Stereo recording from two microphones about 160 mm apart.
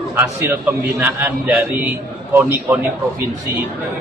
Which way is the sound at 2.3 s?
15° right (ahead or behind).